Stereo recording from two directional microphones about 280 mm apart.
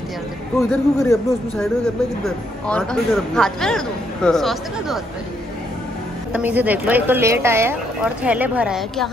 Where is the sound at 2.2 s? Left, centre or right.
Centre.